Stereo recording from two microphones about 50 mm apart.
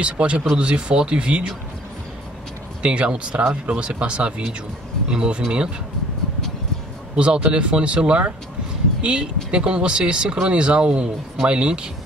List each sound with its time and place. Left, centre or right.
0.0 s speech: right
2.8 s speech: right
7.2 s speech: right